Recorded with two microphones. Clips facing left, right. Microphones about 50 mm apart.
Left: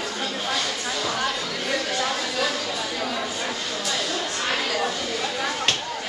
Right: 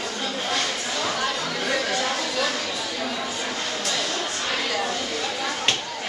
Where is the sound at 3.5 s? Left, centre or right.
Centre.